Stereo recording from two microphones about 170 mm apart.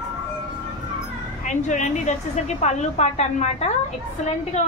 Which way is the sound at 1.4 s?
45° left (ahead or behind).